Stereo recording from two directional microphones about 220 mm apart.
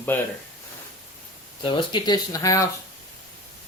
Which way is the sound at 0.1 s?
10° left (ahead or behind).